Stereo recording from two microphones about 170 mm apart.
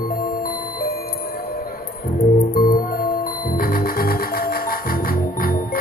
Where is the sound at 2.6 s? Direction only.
55° left (ahead or behind).